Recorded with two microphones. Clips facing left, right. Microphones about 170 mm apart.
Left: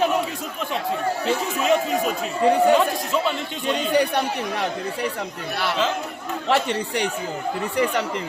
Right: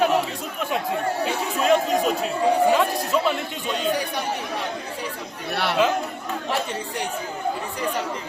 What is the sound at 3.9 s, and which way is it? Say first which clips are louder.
Speech: left 6 dB; 65° left (ahead or behind).